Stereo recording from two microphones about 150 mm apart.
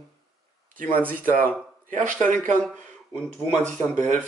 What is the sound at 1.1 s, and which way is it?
Speech, 65° right (ahead or behind).